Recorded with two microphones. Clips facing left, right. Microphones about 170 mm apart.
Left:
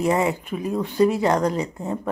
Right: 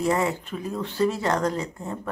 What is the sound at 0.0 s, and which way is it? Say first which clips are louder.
Speech: left 3 dB; 15° left (ahead or behind).